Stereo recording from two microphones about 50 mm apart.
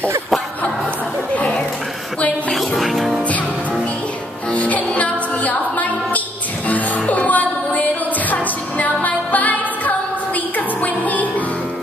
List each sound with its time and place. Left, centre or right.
2.5 s music: centre
4.5 s music: left